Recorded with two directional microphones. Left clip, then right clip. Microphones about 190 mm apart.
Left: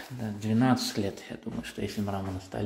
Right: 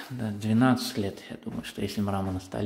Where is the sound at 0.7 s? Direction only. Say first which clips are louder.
Even; 5° right (ahead or behind).